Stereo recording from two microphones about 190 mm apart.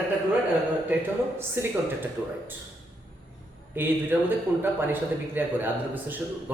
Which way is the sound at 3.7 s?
10° right (ahead or behind).